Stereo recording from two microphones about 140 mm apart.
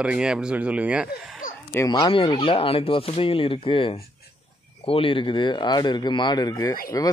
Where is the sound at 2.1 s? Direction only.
40° left (ahead or behind).